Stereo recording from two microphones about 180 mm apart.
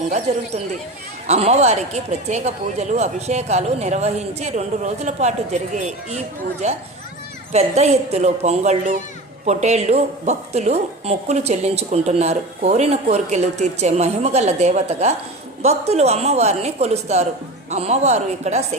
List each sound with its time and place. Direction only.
0.1 s a woman's voice: 40° right (ahead or behind)